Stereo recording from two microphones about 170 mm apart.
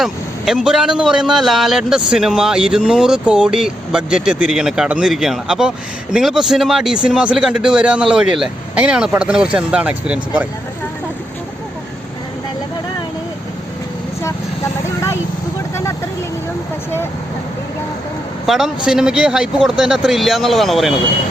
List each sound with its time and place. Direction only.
0.0 s a man's voice: 5° right (ahead or behind)
15.7 s vehicle: 15° left (ahead or behind)
18.4 s a man's voice: centre (ahead or behind)